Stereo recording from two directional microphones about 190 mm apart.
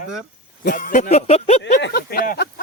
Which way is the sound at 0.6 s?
45° left (ahead or behind).